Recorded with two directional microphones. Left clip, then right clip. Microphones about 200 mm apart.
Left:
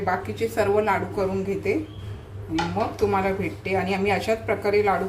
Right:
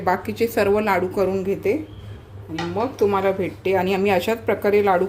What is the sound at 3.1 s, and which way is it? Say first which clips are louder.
A woman's voice: right 3 dB; 45° right (ahead or behind).